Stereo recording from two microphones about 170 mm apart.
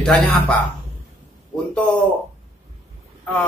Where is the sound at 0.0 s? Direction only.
5° left (ahead or behind).